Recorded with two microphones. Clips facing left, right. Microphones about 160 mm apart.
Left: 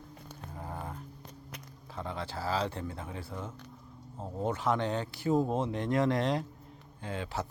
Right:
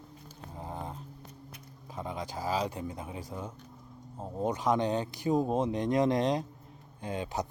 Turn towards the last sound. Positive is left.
turn(degrees=-15)  # may be behind; listen again after turning